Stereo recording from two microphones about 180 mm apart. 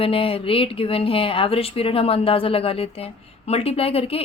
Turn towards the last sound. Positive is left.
turn(degrees=35)  # may be behind; listen again after turning